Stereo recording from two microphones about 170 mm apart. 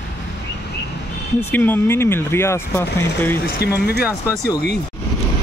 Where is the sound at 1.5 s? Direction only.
10° left (ahead or behind).